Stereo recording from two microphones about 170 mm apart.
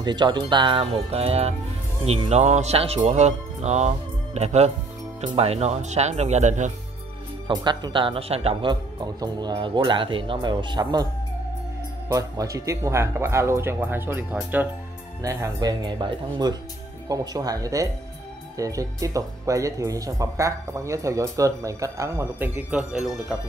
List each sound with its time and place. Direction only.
0.0 s speech: 25° right (ahead or behind); by 6.7 s 45° right (ahead or behind)
7.4 s speech: 25° right (ahead or behind)
12.1 s speech: 20° right (ahead or behind)
15.2 s speech: 20° right (ahead or behind); by 23.1 s 5° right (ahead or behind)